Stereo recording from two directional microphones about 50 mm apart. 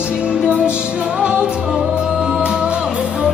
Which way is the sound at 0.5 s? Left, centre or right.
Right.